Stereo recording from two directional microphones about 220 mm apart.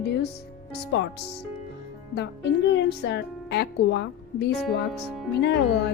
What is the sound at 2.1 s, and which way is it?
A woman's voice, 50° left (ahead or behind).